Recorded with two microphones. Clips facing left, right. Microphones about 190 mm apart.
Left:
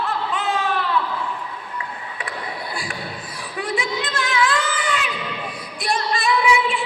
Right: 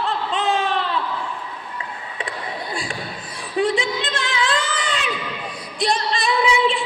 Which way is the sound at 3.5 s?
30° right (ahead or behind).